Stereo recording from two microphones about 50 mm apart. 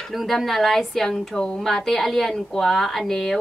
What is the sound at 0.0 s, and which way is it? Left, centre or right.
A woman's voice, centre.